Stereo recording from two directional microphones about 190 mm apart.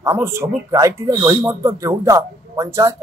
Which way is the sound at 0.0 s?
15° right (ahead or behind).